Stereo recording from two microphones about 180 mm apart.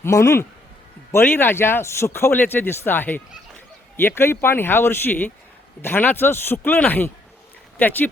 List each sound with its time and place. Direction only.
0.0 s speech: 15° left (ahead or behind)